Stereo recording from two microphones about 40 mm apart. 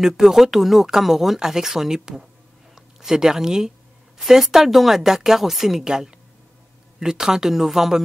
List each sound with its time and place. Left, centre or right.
0.0 s speech: centre
5.9 s a woman's voice: centre